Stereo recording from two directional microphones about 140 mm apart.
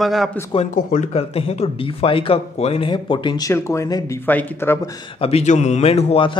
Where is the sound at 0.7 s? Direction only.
65° left (ahead or behind); by 4.7 s 15° left (ahead or behind).